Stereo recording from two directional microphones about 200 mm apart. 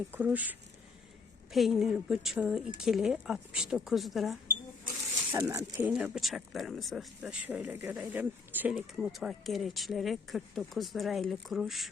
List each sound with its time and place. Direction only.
0.1 s speech: 10° right (ahead or behind)
1.5 s speech: centre (ahead or behind)
5.3 s speech: 15° right (ahead or behind)
5.9 s speech: centre (ahead or behind)